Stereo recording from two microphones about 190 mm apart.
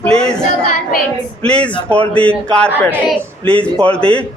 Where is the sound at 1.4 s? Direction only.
5° left (ahead or behind).